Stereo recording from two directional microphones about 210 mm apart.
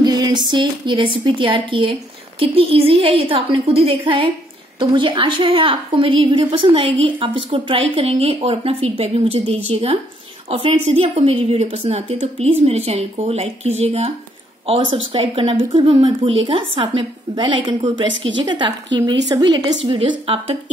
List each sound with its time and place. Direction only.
0.0 s a woman's voice: 20° right (ahead or behind)
15.1 s a woman's voice: 25° right (ahead or behind)
18.9 s speech: 60° right (ahead or behind)
19.2 s a woman's voice: 20° right (ahead or behind)